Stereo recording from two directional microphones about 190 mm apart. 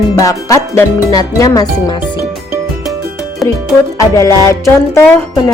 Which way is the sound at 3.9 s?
15° left (ahead or behind).